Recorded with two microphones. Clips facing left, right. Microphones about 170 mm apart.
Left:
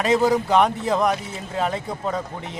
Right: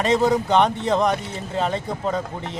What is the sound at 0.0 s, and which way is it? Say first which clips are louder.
Speech: even; centre (ahead or behind).